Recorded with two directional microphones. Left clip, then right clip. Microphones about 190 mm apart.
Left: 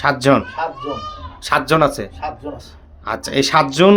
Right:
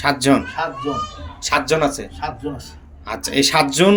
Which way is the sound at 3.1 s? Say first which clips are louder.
Left 1 dB; 35° left (ahead or behind).